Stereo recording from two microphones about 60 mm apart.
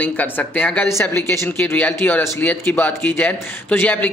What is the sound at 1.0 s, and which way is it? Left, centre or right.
Speech, left.